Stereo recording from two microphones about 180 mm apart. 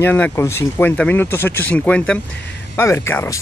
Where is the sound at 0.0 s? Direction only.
10° left (ahead or behind).